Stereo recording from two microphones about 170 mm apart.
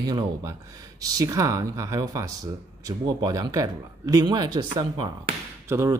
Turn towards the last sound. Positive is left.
turn(degrees=-15)  # may be behind; listen again after turning